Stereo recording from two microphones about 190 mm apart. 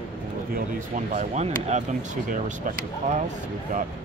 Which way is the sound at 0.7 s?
40° right (ahead or behind).